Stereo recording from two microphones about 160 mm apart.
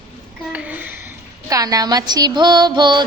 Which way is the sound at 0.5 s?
10° right (ahead or behind).